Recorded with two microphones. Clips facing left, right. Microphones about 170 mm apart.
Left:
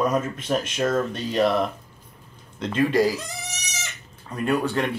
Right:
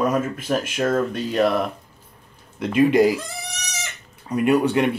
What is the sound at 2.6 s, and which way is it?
Speech, 15° right (ahead or behind).